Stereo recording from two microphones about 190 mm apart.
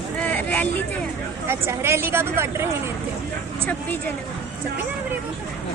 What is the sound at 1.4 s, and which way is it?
A woman's voice, 10° right (ahead or behind).